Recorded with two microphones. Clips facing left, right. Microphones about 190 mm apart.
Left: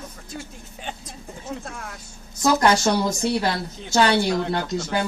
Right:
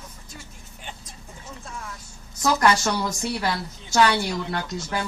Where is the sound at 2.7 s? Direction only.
30° left (ahead or behind).